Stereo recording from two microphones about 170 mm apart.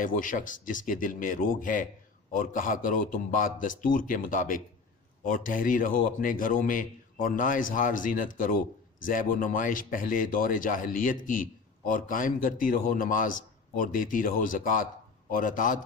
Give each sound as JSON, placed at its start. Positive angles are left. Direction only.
{"t": 0.0, "sound": "speech", "side_deg": 50}